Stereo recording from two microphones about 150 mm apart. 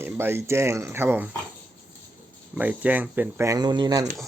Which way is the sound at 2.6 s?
10° right (ahead or behind).